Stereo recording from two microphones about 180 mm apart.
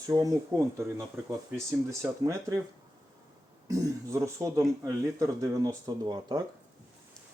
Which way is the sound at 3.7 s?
15° right (ahead or behind).